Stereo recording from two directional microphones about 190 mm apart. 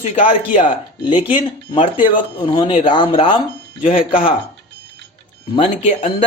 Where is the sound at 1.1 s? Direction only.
25° left (ahead or behind).